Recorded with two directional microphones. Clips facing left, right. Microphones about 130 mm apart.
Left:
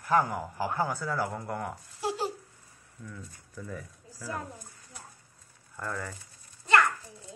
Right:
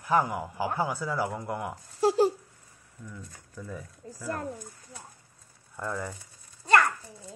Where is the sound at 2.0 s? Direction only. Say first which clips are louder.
Right 9 dB; 40° right (ahead or behind).